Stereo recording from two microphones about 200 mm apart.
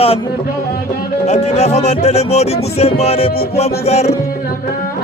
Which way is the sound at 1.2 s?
35° left (ahead or behind).